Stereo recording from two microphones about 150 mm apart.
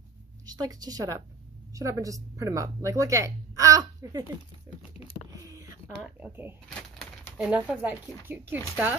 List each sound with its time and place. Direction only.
0.5 s speech: 25° right (ahead or behind)
5.3 s a sound: 25° right (ahead or behind)
6.0 s speech: 10° right (ahead or behind)